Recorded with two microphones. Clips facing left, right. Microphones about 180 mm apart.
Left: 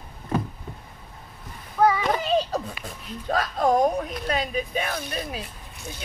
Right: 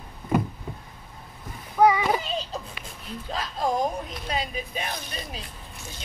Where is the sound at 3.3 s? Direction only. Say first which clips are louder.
Left 6 dB; 55° left (ahead or behind).